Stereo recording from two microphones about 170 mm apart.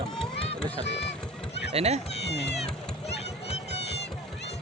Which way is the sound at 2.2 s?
80° left.